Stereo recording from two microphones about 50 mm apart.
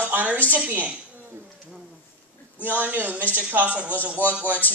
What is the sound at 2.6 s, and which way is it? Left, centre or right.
Speech, right.